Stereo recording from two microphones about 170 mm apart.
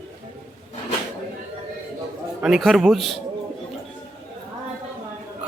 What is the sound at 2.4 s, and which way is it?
Speech, centre (ahead or behind).